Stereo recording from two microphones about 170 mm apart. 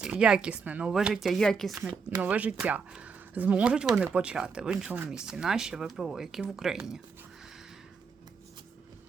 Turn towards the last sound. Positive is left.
turn(degrees=0)  # may be behind; listen again after turning